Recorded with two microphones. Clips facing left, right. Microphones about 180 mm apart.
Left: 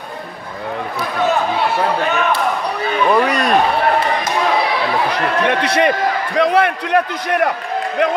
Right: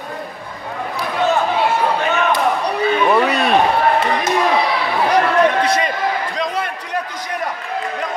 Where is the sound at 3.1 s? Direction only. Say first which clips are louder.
Even; 5° right (ahead or behind).